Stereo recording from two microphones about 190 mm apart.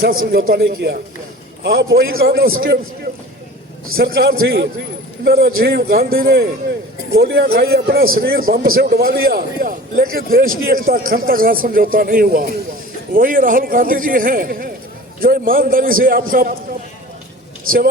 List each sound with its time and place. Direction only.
0.0 s a man's voice: 50° right (ahead or behind)
17.7 s a man's voice: 50° right (ahead or behind)